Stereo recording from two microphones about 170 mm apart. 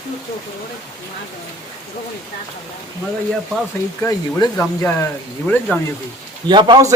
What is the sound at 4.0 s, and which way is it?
Speech, 15° left (ahead or behind).